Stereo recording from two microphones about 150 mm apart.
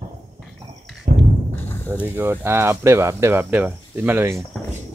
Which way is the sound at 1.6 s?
15° left (ahead or behind).